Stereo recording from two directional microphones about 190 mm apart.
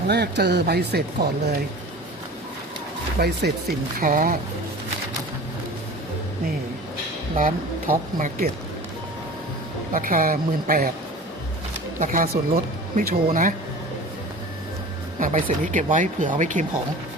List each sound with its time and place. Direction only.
0.1 s speech: 60° right (ahead or behind)
3.2 s speech: 55° right (ahead or behind)
7.3 s speech: 45° right (ahead or behind)
9.9 s speech: 50° right (ahead or behind)
11.9 s speech: 45° right (ahead or behind)
15.2 s speech: 45° right (ahead or behind)